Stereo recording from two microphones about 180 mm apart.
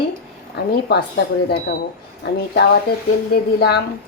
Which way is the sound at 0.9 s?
70° left (ahead or behind).